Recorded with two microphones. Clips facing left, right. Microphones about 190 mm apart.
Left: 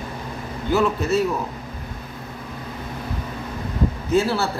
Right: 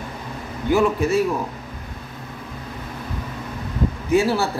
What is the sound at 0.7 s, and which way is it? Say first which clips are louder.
Speech: right 2 dB; 15° right (ahead or behind).